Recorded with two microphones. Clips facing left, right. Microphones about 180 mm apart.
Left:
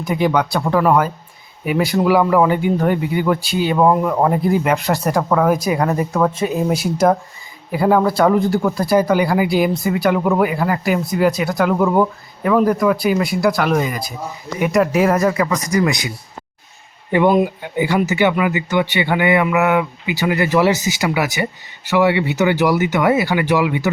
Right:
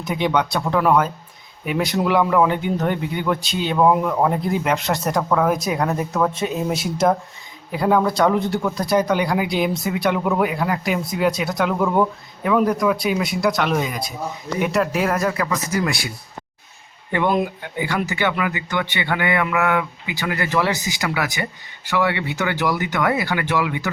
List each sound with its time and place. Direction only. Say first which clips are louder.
0.0 s speech: left 3 dB; 5° left (ahead or behind)
17.1 s speech: left 6 dB; 15° left (ahead or behind)